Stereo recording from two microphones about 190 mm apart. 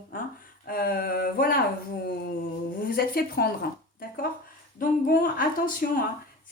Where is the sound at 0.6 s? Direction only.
50° left (ahead or behind).